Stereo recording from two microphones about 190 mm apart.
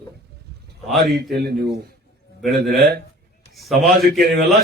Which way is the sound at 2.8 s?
55° right (ahead or behind).